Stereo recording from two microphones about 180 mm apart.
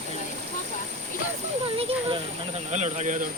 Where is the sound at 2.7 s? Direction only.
40° right (ahead or behind).